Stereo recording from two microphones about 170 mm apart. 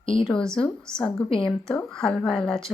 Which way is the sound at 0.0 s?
30° left (ahead or behind).